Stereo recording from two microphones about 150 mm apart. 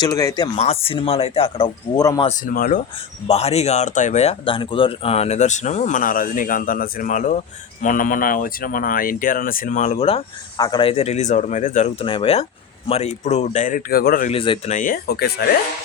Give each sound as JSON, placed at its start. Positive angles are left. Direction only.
{"t": 0.0, "sound": "speech", "side_deg": 20}
{"t": 0.5, "sound": "speech", "side_deg": 40}
{"t": 2.4, "sound": "speech", "side_deg": 70}
{"t": 3.2, "sound": "speech", "side_deg": 45}
{"t": 10.6, "sound": "speech", "side_deg": 30}
{"t": 12.0, "sound": "speech", "side_deg": 40}
{"t": 14.3, "sound": "speech", "side_deg": 35}
{"t": 14.7, "sound": "speech", "side_deg": 60}